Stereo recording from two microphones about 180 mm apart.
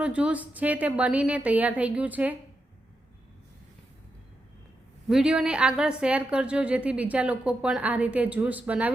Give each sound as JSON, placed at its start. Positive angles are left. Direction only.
{"t": 0.0, "sound": "a woman's voice", "side_deg": -5}
{"t": 5.0, "sound": "a woman's voice", "side_deg": -5}